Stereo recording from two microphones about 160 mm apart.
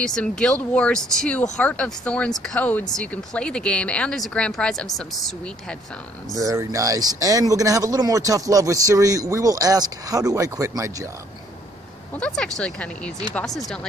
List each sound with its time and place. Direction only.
0.0 s speech: 5° left (ahead or behind)
6.3 s speech: 20° right (ahead or behind)
12.2 s speech: 5° left (ahead or behind)